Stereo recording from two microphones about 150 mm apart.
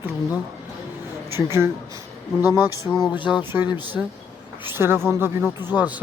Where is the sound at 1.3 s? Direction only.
20° right (ahead or behind).